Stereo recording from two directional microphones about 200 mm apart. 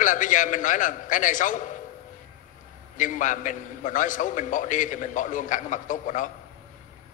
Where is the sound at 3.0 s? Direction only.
40° left (ahead or behind).